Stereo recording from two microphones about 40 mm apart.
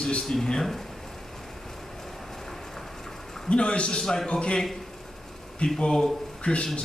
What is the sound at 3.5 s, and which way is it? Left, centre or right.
Speech, left.